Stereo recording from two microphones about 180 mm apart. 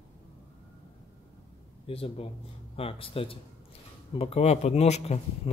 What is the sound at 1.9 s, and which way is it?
A man's voice, 30° left (ahead or behind).